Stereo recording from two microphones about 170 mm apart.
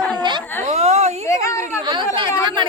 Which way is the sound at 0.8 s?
40° right (ahead or behind).